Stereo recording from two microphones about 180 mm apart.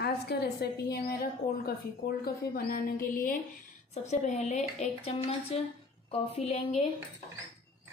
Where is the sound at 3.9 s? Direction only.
40° left (ahead or behind).